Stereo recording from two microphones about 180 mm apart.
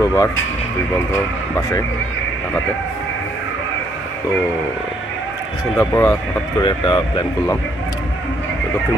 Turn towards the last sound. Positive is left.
turn(degrees=25)  # may be behind; listen again after turning